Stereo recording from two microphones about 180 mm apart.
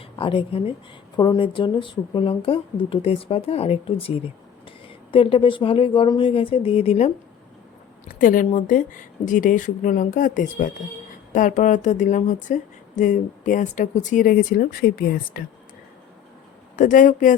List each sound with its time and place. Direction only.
0.2 s speech: 30° left (ahead or behind)
8.2 s speech: 50° left (ahead or behind)
16.7 s speech: 45° left (ahead or behind)